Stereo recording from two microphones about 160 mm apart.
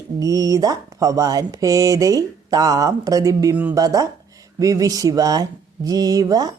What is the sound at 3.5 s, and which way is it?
Speech, 10° right (ahead or behind).